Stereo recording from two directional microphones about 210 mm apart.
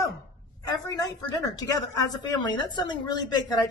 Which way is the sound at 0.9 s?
20° left (ahead or behind).